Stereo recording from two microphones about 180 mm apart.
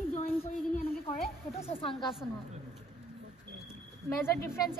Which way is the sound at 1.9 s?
Centre (ahead or behind).